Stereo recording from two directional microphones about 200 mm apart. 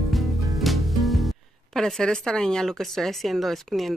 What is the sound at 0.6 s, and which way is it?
Speech, centre (ahead or behind).